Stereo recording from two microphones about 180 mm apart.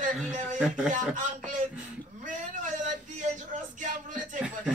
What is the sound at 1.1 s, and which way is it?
Speech, 45° right (ahead or behind).